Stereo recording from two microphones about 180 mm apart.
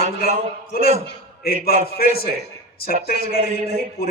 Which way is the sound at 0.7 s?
55° left (ahead or behind).